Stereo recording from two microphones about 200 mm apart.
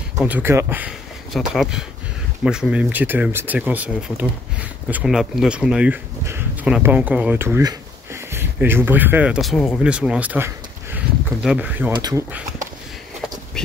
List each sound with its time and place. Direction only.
0.2 s speech: 10° right (ahead or behind)
11.9 s speech: 20° right (ahead or behind)